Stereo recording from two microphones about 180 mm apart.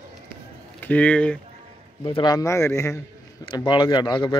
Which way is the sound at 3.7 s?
25° left (ahead or behind).